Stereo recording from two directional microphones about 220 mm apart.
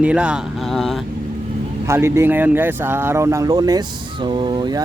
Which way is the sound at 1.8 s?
10° right (ahead or behind).